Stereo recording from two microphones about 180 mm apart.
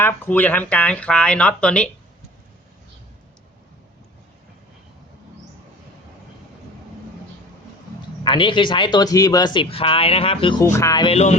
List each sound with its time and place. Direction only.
0.0 s speech: 10° left (ahead or behind)
8.2 s speech: 25° left (ahead or behind)
10.6 s speech: 15° left (ahead or behind); by 11.3 s 35° left (ahead or behind)